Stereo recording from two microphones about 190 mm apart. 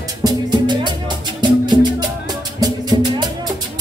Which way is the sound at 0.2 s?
25° right (ahead or behind).